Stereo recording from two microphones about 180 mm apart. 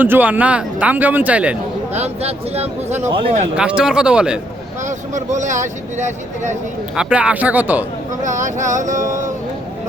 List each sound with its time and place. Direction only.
0.0 s speech: 10° right (ahead or behind)
1.9 s speech: 35° right (ahead or behind)
3.5 s speech: 5° right (ahead or behind)
4.9 s speech: 40° right (ahead or behind)
6.9 s speech: 5° right (ahead or behind)
8.2 s speech: 45° right (ahead or behind)